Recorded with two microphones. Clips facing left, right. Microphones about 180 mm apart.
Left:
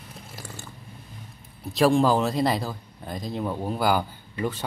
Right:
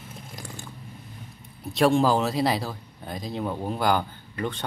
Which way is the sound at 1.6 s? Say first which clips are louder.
Left 1 dB; centre (ahead or behind).